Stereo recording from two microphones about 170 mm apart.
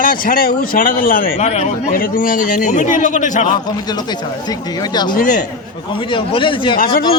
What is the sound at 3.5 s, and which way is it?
Speech, 25° left (ahead or behind).